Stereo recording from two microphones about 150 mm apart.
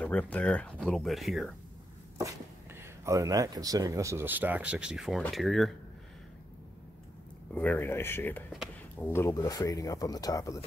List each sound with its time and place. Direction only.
0.0 s speech: 10° left (ahead or behind)
3.1 s speech: 25° right (ahead or behind); by 5.8 s centre (ahead or behind)
7.5 s speech: 10° left (ahead or behind)